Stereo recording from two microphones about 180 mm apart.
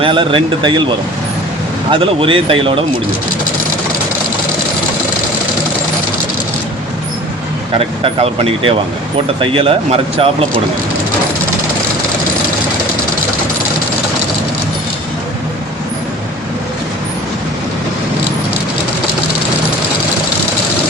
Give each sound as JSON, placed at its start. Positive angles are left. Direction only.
{"t": 0.0, "sound": "speech", "side_deg": -30}
{"t": 1.9, "sound": "speech", "side_deg": -30}
{"t": 8.0, "sound": "speech", "side_deg": -30}